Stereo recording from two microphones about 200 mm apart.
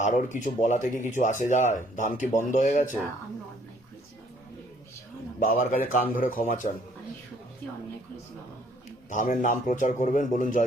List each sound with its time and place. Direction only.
0.0 s speech: 40° left (ahead or behind)
5.4 s speech: 40° left (ahead or behind)
9.0 s speech: 40° left (ahead or behind)